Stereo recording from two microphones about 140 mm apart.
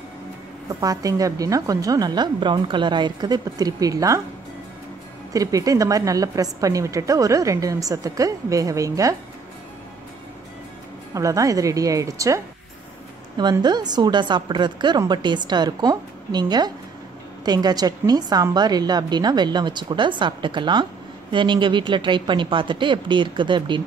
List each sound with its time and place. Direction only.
0.7 s a woman's voice: 25° right (ahead or behind)
5.3 s a woman's voice: 25° right (ahead or behind)
11.1 s a woman's voice: 25° right (ahead or behind)
13.4 s a woman's voice: 30° right (ahead or behind)